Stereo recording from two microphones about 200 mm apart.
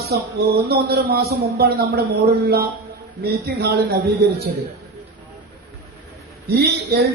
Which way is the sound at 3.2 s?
50° right (ahead or behind).